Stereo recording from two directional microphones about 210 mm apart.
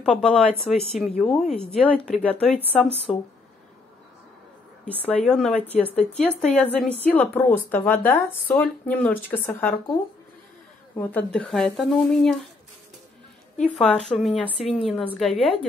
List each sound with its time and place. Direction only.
0.0 s speech: 5° left (ahead or behind)
4.8 s speech: 5° left (ahead or behind)
11.0 s speech: 10° left (ahead or behind)
13.6 s speech: 5° left (ahead or behind)
15.3 s a woman's voice: 25° left (ahead or behind)